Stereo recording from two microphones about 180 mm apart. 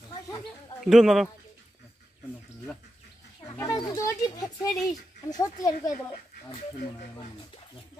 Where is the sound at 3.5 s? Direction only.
20° left (ahead or behind).